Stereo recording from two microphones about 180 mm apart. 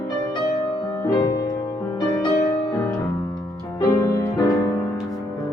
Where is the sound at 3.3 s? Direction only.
20° left (ahead or behind).